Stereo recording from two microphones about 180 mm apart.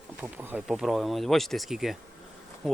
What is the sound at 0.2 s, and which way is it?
Speech, 10° right (ahead or behind).